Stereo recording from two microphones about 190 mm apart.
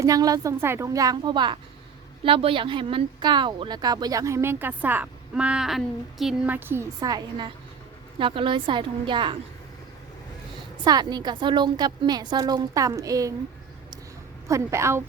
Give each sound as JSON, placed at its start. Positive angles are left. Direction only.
{"t": 0.0, "sound": "speech", "side_deg": -20}
{"t": 10.8, "sound": "speech", "side_deg": -20}
{"t": 14.4, "sound": "a woman's voice", "side_deg": -15}